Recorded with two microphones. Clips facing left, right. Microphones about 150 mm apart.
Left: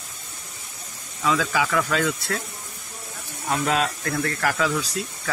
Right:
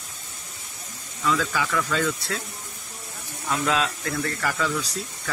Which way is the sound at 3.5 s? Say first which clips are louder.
Left 1 dB; 45° left (ahead or behind).